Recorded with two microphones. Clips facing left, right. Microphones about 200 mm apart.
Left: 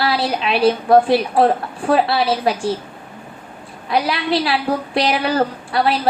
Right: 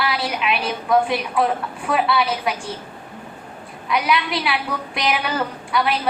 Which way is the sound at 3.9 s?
35° left (ahead or behind).